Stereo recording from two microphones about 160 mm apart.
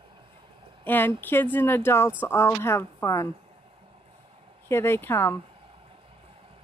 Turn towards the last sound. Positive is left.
turn(degrees=15)  # may be behind; listen again after turning